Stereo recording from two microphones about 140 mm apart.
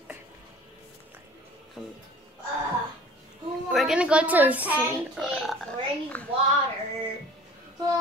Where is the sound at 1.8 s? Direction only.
Centre (ahead or behind).